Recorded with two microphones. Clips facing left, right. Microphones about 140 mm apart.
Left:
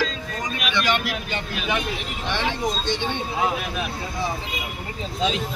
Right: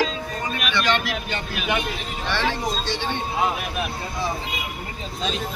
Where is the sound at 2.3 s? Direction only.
15° left (ahead or behind).